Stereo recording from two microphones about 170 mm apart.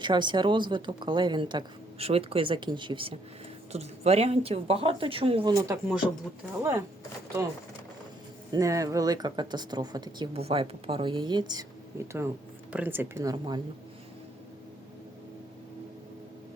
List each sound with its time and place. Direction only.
0.0 s a woman's voice: 25° right (ahead or behind)
5.5 s a woman's voice: 20° right (ahead or behind)
8.5 s a woman's voice: 20° right (ahead or behind)
10.3 s a woman's voice: 35° right (ahead or behind)